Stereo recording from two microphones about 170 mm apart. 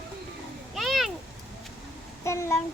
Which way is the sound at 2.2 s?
15° left (ahead or behind).